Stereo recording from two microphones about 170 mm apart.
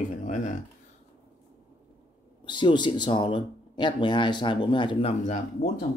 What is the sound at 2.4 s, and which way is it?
Speech, 25° left (ahead or behind).